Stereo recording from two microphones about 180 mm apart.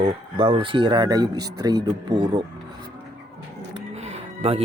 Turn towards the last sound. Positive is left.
turn(degrees=-35)  # may be behind; listen again after turning